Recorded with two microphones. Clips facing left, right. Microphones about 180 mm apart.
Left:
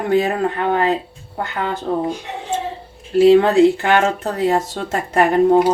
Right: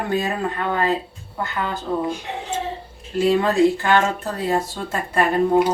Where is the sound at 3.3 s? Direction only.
65° left (ahead or behind).